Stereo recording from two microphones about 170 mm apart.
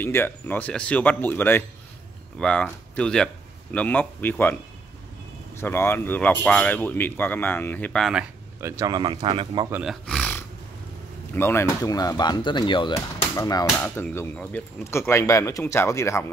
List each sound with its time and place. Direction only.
0.0 s speech: 10° left (ahead or behind)
5.6 s speech: 15° left (ahead or behind)
8.5 s speech: 15° right (ahead or behind)
9.7 s speech: 10° right (ahead or behind)
10.0 s roaring cats: 10° left (ahead or behind)
11.3 s speech: 15° left (ahead or behind)